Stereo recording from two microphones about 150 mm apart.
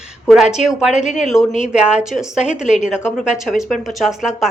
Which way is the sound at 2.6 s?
50° left (ahead or behind).